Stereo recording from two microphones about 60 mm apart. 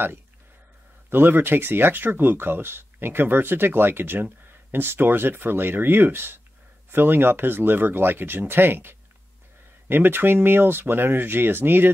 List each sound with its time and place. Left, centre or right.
1.1 s speech: right